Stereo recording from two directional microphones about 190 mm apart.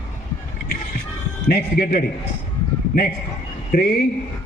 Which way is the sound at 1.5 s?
50° left (ahead or behind).